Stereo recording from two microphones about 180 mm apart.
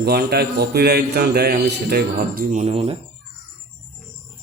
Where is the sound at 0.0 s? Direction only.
60° right (ahead or behind); by 3.0 s 30° right (ahead or behind).